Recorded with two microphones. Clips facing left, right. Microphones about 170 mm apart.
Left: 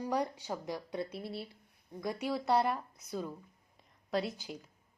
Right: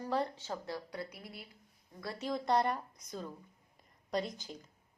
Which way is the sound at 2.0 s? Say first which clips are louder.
Left 3 dB; 15° left (ahead or behind).